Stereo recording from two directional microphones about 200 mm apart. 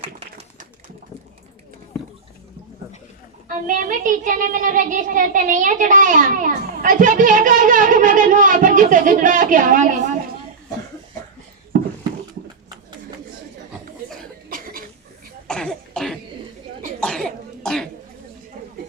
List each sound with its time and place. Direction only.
0.0 s a sound: 30° right (ahead or behind)
3.5 s a child's voice: 40° right (ahead or behind)
14.5 s cough: 45° right (ahead or behind)
15.4 s cough: 5° left (ahead or behind)